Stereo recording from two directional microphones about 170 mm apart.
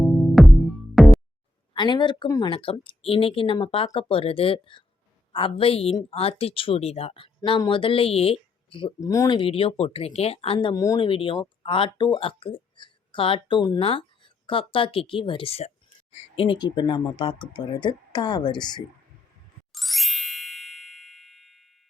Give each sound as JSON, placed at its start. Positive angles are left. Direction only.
{"t": 0.0, "sound": "music", "side_deg": 0}
{"t": 1.7, "sound": "a woman's voice", "side_deg": 25}
{"t": 9.0, "sound": "speech", "side_deg": 20}
{"t": 9.5, "sound": "a woman's voice", "side_deg": 35}
{"t": 11.0, "sound": "a woman's voice", "side_deg": 30}
{"t": 19.7, "sound": "ding", "side_deg": 0}